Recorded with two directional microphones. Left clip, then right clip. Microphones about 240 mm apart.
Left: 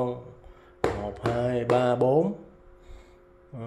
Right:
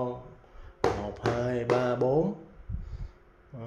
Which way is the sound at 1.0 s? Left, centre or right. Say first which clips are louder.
Left 2 dB; centre.